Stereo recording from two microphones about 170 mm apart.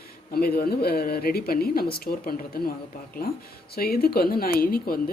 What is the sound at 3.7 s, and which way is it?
Speech, 65° left (ahead or behind).